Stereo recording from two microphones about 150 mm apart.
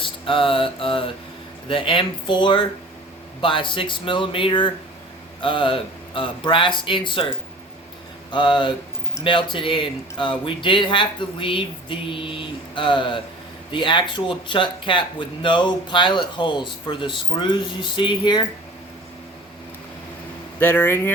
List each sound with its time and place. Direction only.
0.0 s a sound: 35° left (ahead or behind)
1.6 s speech: 35° left (ahead or behind)
8.3 s speech: 30° left (ahead or behind)
20.6 s speech: 15° left (ahead or behind)